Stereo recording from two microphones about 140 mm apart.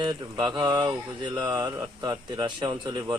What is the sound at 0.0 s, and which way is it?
Speech, 35° right (ahead or behind).